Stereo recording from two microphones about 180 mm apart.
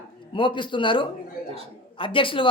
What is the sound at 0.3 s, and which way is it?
Speech, 25° left (ahead or behind).